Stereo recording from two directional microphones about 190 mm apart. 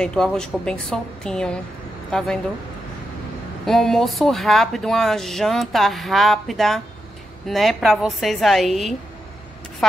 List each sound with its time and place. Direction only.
0.0 s speech: 5° left (ahead or behind)
3.6 s speech: centre (ahead or behind)